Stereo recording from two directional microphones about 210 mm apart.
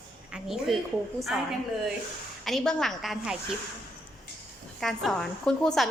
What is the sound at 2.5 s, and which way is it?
Speech, centre (ahead or behind).